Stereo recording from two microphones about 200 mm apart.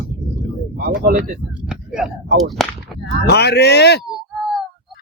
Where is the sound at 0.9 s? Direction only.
45° right (ahead or behind).